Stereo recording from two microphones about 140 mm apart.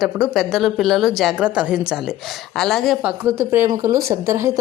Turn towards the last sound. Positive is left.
turn(degrees=-20)  # may be behind; listen again after turning